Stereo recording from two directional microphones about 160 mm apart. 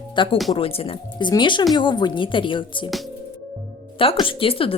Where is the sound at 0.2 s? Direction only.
30° left (ahead or behind).